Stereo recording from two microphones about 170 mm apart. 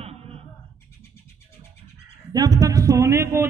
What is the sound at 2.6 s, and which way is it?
Speech, 20° right (ahead or behind).